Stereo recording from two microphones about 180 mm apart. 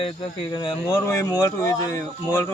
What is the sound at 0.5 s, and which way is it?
A man's voice, 25° left (ahead or behind).